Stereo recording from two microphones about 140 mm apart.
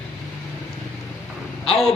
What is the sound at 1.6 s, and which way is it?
Speech, 45° left (ahead or behind).